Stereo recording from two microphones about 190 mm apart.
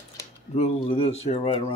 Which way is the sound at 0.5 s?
30° left (ahead or behind).